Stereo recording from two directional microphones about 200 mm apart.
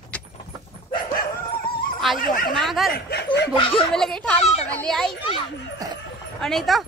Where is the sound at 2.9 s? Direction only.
55° left (ahead or behind).